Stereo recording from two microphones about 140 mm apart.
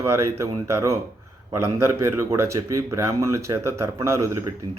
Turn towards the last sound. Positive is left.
turn(degrees=-20)  # may be behind; listen again after turning